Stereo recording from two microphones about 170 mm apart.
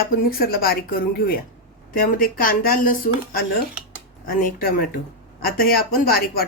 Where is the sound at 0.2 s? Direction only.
60° left (ahead or behind).